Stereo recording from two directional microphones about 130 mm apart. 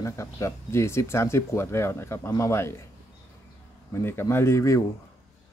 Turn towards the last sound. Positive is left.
turn(degrees=25)  # may be behind; listen again after turning